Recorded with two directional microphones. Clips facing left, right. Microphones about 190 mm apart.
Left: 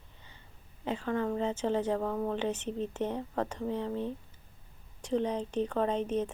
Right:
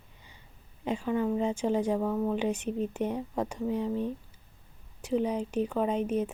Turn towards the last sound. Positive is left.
turn(degrees=-10)  # may be behind; listen again after turning